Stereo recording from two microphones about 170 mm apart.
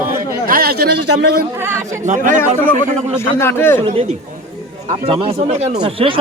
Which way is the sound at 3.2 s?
15° left (ahead or behind).